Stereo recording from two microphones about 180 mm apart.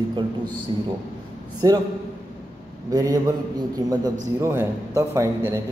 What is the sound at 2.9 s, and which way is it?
A man's voice, 20° right (ahead or behind).